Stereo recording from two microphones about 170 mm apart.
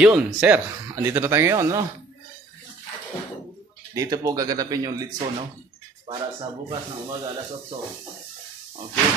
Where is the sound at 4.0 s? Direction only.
20° right (ahead or behind).